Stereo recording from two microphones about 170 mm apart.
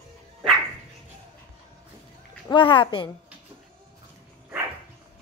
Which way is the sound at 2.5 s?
30° left (ahead or behind).